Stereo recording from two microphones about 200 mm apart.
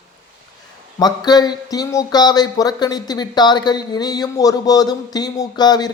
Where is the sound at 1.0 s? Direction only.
20° left (ahead or behind).